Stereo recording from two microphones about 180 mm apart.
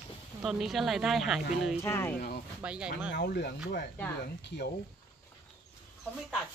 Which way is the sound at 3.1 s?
60° left (ahead or behind).